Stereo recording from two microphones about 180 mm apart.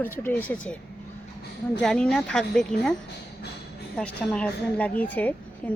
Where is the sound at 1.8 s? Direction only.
5° left (ahead or behind).